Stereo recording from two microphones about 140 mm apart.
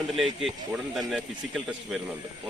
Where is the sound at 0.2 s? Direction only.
Centre (ahead or behind).